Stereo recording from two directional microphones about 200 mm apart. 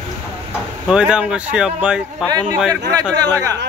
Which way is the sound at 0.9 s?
5° right (ahead or behind).